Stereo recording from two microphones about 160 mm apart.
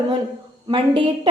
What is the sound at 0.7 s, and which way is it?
Speech, 35° right (ahead or behind).